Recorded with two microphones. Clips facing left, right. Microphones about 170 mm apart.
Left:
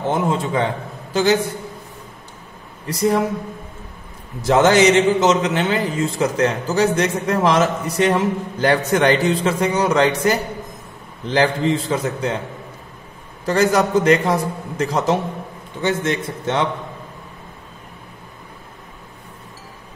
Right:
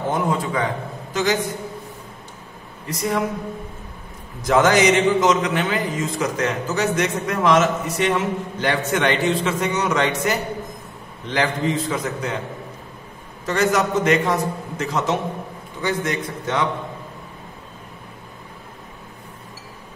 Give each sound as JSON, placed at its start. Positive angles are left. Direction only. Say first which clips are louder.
{"t": 0.1, "sound": "a man's voice", "louder": "left 3 dB", "side_deg": 25}
{"t": 2.9, "sound": "a man's voice", "louder": "left 6 dB", "side_deg": 30}
{"t": 4.4, "sound": "a man's voice", "louder": "left 3 dB", "side_deg": 30}
{"t": 13.5, "sound": "a man's voice", "louder": "left 3 dB", "side_deg": 35}